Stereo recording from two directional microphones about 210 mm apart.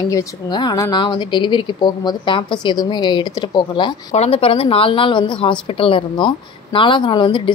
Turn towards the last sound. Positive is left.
turn(degrees=20)  # may be behind; listen again after turning